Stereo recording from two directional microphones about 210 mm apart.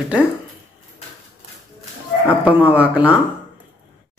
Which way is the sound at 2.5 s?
10° right (ahead or behind).